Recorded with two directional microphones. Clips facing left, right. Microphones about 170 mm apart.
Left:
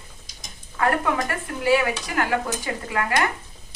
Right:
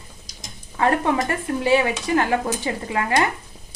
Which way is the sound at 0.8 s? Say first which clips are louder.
Right 3 dB; 25° right (ahead or behind).